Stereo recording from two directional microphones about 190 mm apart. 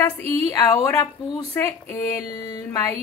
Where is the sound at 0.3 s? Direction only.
15° left (ahead or behind).